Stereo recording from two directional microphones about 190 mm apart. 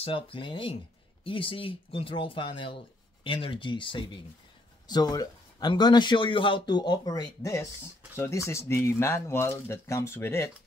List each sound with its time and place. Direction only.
0.0 s a man's voice: 30° left (ahead or behind); by 10.5 s 10° left (ahead or behind)